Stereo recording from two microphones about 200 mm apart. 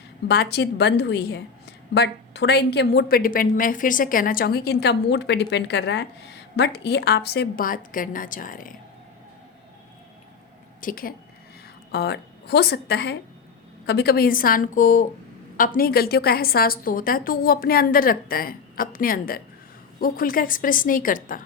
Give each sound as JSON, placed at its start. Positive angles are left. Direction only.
{"t": 0.3, "sound": "a woman's voice", "side_deg": 55}
{"t": 10.8, "sound": "a woman's voice", "side_deg": 45}
{"t": 11.9, "sound": "a woman's voice", "side_deg": 55}